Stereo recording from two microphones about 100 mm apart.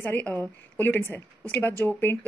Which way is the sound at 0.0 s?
20° left (ahead or behind).